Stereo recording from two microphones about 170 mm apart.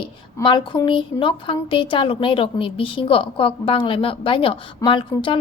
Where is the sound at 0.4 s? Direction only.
30° left (ahead or behind).